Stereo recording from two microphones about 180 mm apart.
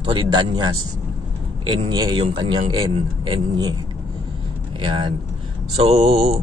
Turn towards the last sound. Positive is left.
turn(degrees=-30)  # may be behind; listen again after turning